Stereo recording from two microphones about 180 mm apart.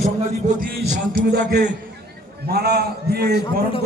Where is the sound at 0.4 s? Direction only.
50° right (ahead or behind).